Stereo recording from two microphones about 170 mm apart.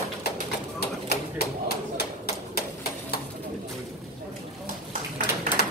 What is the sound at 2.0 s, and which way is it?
Bird, 65° left (ahead or behind).